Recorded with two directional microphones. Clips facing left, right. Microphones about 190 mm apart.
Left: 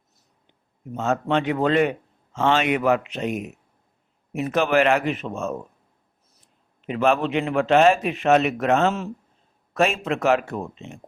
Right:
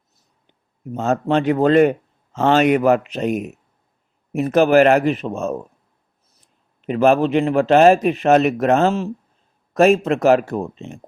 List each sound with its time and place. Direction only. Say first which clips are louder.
0.9 s a man's voice: right 4 dB; 40° right (ahead or behind)
6.8 s a man's voice: right 6 dB; 40° right (ahead or behind)